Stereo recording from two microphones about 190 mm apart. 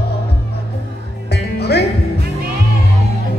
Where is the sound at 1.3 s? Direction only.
60° left (ahead or behind).